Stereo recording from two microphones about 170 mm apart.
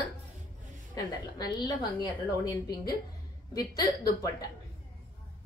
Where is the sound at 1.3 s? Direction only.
25° left (ahead or behind).